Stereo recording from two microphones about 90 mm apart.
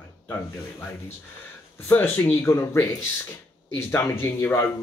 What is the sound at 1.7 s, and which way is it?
Speech, 25° left (ahead or behind).